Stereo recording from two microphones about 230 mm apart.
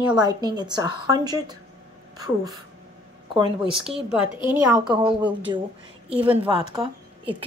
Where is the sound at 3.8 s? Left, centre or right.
Centre.